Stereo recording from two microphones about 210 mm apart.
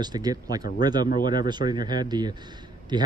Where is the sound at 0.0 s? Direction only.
20° right (ahead or behind).